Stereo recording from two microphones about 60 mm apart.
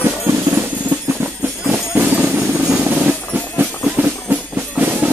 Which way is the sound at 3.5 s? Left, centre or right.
Right.